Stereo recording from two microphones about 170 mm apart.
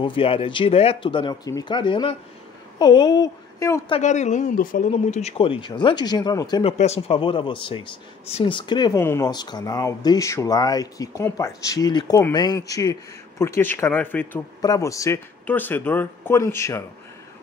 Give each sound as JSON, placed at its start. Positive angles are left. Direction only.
{"t": 0.0, "sound": "speech", "side_deg": 30}
{"t": 3.9, "sound": "speech", "side_deg": 45}
{"t": 6.6, "sound": "speech", "side_deg": 35}